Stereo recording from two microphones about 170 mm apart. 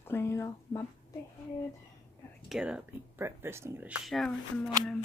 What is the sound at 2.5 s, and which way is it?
Speech, 5° right (ahead or behind).